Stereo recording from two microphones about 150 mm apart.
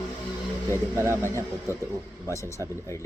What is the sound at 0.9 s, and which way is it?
Speech, 15° right (ahead or behind).